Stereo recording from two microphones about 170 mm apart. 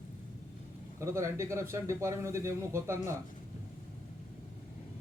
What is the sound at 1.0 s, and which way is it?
Speech, 15° right (ahead or behind).